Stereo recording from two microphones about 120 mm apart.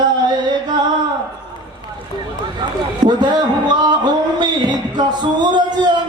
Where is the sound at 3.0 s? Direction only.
35° right (ahead or behind).